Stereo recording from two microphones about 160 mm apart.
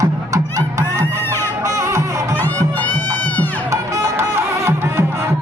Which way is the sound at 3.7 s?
20° right (ahead or behind).